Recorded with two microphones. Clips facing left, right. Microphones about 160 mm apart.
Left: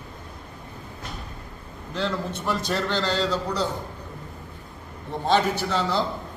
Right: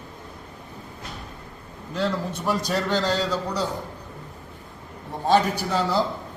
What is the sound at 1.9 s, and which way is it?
A man's voice, 10° right (ahead or behind).